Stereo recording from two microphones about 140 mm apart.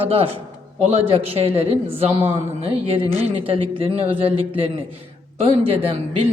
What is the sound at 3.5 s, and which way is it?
Speech, 45° right (ahead or behind).